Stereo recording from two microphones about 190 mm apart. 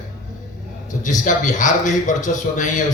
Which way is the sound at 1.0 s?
40° left (ahead or behind).